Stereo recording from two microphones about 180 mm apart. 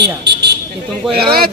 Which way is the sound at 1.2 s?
60° right (ahead or behind).